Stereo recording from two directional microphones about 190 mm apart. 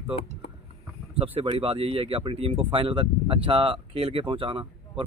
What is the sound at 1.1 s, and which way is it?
Speech, 30° right (ahead or behind).